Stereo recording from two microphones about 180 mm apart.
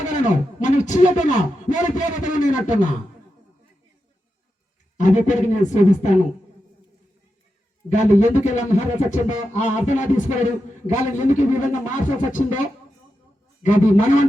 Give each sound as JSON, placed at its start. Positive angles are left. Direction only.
{"t": 0.6, "sound": "a man's voice", "side_deg": 40}
{"t": 4.9, "sound": "a man's voice", "side_deg": 45}
{"t": 7.9, "sound": "a man's voice", "side_deg": 40}